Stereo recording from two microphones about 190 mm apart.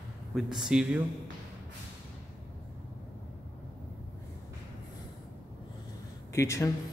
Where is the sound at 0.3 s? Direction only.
5° right (ahead or behind).